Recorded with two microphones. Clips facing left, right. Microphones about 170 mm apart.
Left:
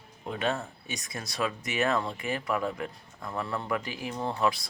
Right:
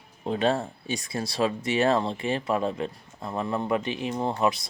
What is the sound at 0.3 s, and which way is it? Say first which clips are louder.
Speech: right 6 dB; 30° right (ahead or behind).